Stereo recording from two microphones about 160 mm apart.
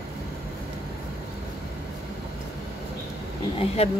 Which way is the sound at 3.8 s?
40° left (ahead or behind).